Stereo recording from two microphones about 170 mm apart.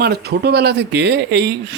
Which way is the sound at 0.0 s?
70° right (ahead or behind).